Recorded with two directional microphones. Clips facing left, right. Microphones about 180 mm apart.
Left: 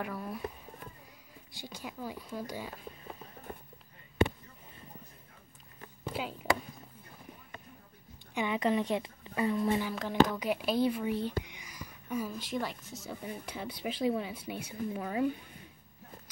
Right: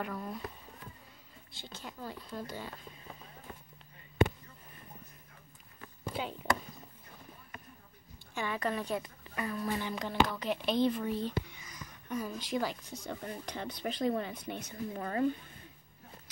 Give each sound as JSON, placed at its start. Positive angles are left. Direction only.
{"t": 0.0, "sound": "speech", "side_deg": 10}
{"t": 1.6, "sound": "speech", "side_deg": 10}
{"t": 6.0, "sound": "a sound", "side_deg": 5}
{"t": 8.4, "sound": "a woman's voice", "side_deg": 20}
{"t": 9.8, "sound": "speech", "side_deg": 5}